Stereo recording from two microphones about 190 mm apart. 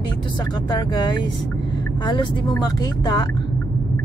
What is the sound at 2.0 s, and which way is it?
Speech, 25° left (ahead or behind).